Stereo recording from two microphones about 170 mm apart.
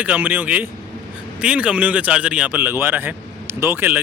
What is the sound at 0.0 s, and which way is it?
Speech, 10° right (ahead or behind).